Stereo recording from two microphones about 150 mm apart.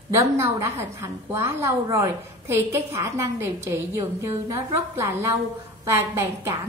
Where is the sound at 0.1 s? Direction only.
15° right (ahead or behind).